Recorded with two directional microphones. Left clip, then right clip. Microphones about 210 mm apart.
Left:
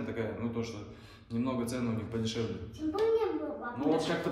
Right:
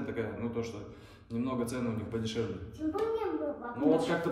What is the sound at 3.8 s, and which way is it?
Speech, centre (ahead or behind).